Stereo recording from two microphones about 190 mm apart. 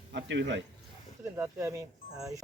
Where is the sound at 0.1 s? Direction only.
70° right (ahead or behind).